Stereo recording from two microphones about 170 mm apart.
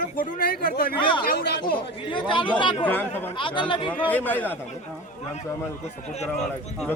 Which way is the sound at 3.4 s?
30° left (ahead or behind).